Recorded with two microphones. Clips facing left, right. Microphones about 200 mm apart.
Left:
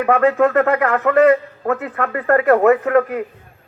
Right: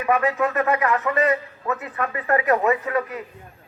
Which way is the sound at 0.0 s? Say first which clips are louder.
Left 7 dB; 55° left (ahead or behind).